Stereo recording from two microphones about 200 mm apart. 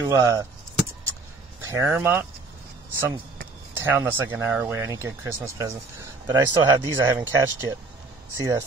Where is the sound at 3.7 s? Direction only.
10° right (ahead or behind).